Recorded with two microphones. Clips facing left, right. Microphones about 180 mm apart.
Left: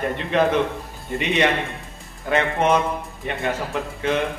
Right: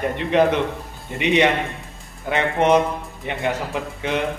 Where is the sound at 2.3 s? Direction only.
15° right (ahead or behind).